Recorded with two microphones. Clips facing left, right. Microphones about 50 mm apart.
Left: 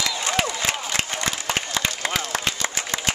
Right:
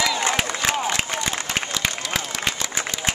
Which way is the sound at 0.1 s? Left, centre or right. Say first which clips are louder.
Right 4 dB; right.